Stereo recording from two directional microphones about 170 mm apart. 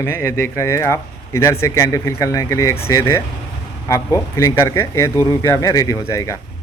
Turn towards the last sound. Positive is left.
turn(degrees=20)  # may be behind; listen again after turning